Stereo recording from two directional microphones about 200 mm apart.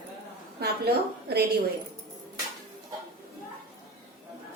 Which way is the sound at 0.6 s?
50° right (ahead or behind).